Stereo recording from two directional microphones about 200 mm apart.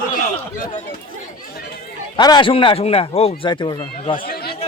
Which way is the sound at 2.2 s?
20° left (ahead or behind).